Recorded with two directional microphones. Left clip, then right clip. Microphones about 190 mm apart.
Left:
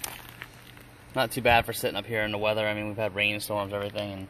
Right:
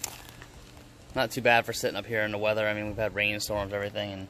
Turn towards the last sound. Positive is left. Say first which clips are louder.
# even
turn(degrees=20)  # may be behind; listen again after turning